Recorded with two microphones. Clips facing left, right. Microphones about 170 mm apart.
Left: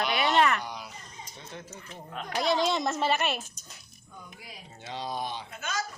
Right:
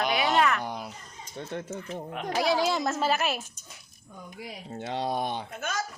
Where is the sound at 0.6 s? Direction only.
50° right (ahead or behind).